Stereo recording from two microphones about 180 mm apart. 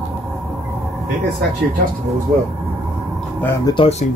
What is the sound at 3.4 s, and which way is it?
Speech, 15° left (ahead or behind).